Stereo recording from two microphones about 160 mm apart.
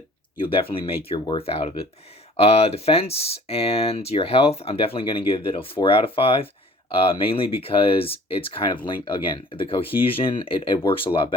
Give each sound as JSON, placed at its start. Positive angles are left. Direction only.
{"t": 0.5, "sound": "speech", "side_deg": 35}